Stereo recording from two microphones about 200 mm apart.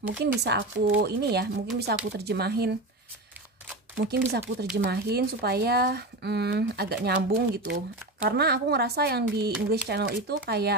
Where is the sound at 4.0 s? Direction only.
55° right (ahead or behind).